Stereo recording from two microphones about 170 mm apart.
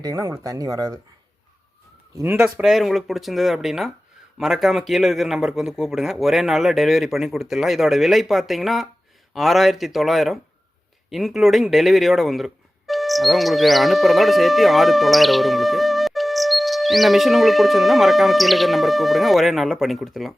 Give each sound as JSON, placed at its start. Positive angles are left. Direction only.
{"t": 0.0, "sound": "speech", "side_deg": -20}
{"t": 2.1, "sound": "speech", "side_deg": -10}